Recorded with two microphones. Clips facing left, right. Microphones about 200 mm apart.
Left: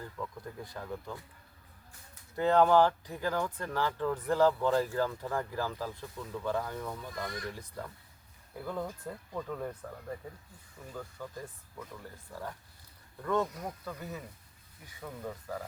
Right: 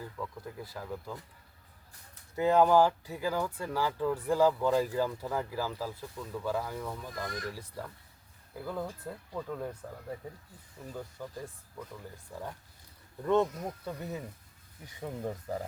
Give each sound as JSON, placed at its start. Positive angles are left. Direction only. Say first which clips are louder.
{"t": 0.0, "sound": "speech", "louder": "right 1 dB", "side_deg": -5}
{"t": 2.3, "sound": "speech", "louder": "right 1 dB", "side_deg": -10}
{"t": 11.2, "sound": "speech", "louder": "right 1 dB", "side_deg": -15}